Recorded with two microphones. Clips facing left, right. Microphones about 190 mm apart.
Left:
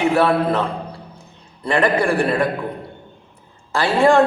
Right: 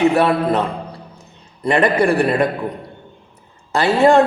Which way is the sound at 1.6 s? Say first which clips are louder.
Right 2 dB; 20° right (ahead or behind).